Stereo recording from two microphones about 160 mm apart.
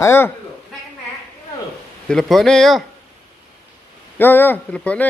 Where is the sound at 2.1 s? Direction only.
Centre (ahead or behind).